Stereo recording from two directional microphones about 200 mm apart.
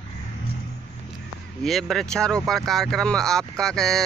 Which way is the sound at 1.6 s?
Centre (ahead or behind).